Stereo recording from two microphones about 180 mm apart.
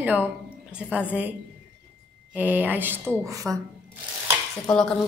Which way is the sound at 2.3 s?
10° right (ahead or behind).